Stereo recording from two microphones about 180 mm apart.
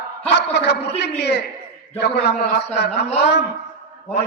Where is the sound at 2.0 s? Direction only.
70° left (ahead or behind).